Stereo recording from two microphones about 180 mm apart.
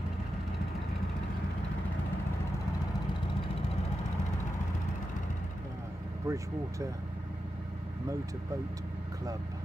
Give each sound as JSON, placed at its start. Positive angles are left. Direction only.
{"t": 6.2, "sound": "speech", "side_deg": -15}